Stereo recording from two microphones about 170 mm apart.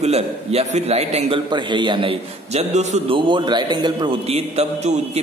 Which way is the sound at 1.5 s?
25° right (ahead or behind).